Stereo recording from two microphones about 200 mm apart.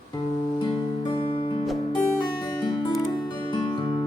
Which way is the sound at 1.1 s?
25° left (ahead or behind).